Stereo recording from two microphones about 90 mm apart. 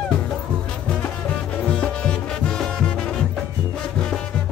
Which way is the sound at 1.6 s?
10° left (ahead or behind).